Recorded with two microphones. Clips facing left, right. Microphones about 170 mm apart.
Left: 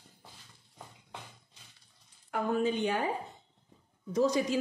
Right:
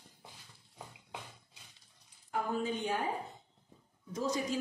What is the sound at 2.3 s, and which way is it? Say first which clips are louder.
Speech: left 5 dB; 70° left (ahead or behind).